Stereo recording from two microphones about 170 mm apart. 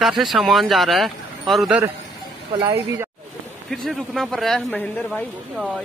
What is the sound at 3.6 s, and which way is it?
Speech, centre (ahead or behind).